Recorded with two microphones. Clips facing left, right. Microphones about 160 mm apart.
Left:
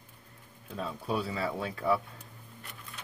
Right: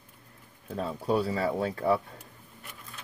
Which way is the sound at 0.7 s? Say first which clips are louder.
Right 5 dB; 45° right (ahead or behind).